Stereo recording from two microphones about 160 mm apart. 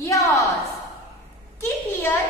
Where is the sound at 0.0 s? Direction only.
20° left (ahead or behind).